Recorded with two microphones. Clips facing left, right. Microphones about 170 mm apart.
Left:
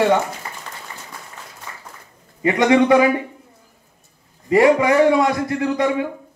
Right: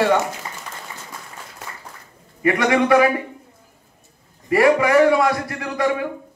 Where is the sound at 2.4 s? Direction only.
20° left (ahead or behind).